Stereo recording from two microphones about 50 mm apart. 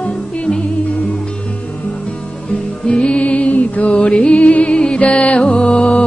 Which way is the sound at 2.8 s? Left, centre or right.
Left.